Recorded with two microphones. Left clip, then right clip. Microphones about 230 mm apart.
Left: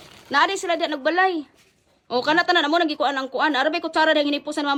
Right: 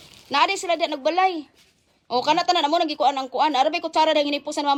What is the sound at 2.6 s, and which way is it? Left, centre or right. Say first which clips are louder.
Speech: left 1 dB; right.